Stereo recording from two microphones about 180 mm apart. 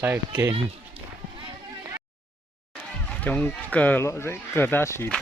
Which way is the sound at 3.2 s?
10° left (ahead or behind).